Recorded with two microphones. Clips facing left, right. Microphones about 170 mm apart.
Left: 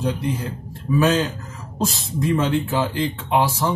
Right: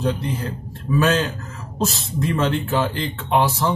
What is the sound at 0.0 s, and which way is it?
Speech, 10° left (ahead or behind).